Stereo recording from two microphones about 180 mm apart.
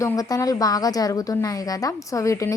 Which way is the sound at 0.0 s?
20° left (ahead or behind).